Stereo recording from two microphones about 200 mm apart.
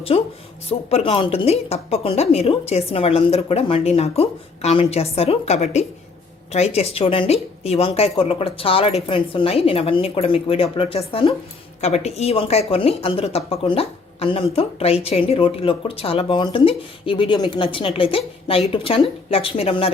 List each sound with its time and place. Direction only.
0.1 s a woman's voice: 30° left (ahead or behind)